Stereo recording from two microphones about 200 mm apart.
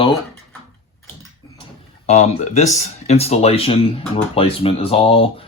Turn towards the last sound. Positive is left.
turn(degrees=30)  # may be behind; listen again after turning